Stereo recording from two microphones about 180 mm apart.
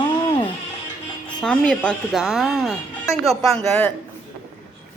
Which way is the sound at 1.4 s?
5° left (ahead or behind).